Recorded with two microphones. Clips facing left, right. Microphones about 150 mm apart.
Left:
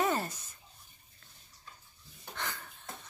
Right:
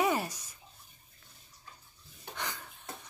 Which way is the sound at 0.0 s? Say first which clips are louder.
Right 1 dB; 15° right (ahead or behind).